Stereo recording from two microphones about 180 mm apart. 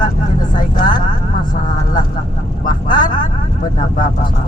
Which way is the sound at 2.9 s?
50° left (ahead or behind).